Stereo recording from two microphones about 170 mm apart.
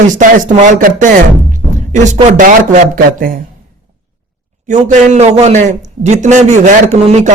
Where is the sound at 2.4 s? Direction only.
50° right (ahead or behind).